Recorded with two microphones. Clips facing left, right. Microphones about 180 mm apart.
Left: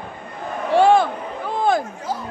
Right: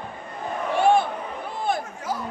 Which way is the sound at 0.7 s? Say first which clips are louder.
Left 5 dB; 90° left.